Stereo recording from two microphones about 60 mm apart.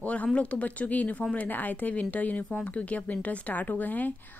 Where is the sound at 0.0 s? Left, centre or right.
Left.